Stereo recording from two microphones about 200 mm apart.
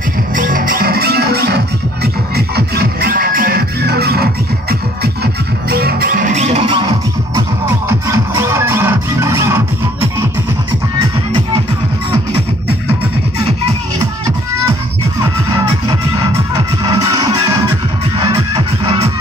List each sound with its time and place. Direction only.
0.4 s music: 45° right (ahead or behind); by 6.9 s 25° right (ahead or behind)
8.1 s music: 15° right (ahead or behind)
16.8 s music: 15° right (ahead or behind)